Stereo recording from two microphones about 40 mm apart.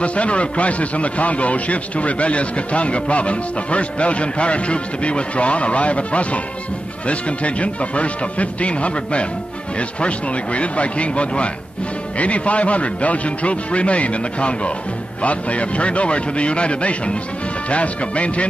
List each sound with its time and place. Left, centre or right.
0.0 s a man's voice: left